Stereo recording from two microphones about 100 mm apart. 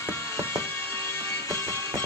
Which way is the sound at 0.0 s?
25° left (ahead or behind).